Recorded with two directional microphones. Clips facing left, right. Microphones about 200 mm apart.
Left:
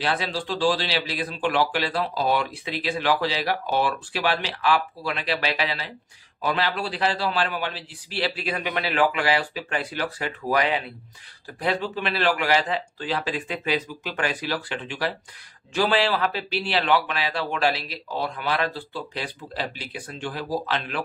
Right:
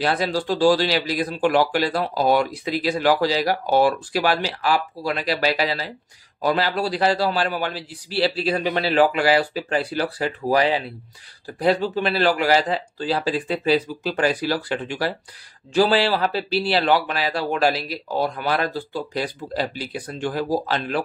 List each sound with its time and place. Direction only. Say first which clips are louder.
0.0 s speech: right 5 dB; 40° right (ahead or behind)